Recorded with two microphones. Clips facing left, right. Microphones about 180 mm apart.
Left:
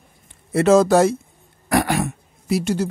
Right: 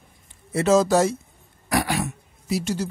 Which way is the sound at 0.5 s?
55° left (ahead or behind).